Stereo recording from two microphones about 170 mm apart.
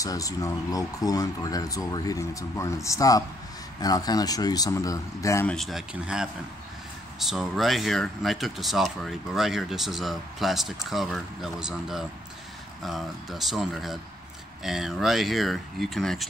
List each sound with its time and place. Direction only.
0.0 s speech: 20° left (ahead or behind)
5.5 s speech: centre (ahead or behind)